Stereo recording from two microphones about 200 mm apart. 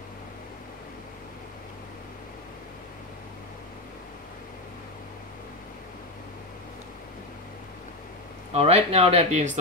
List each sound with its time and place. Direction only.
8.5 s speech: 30° right (ahead or behind)